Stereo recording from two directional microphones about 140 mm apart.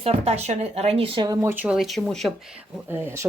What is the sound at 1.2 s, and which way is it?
Speech, 25° right (ahead or behind).